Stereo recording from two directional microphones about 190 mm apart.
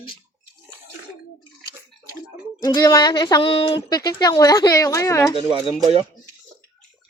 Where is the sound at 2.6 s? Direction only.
20° left (ahead or behind).